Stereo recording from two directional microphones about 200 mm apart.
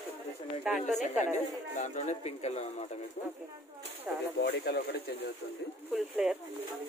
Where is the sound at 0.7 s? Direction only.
35° left (ahead or behind).